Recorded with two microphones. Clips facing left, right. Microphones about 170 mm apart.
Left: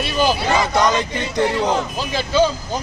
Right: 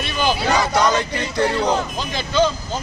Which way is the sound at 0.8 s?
20° left (ahead or behind).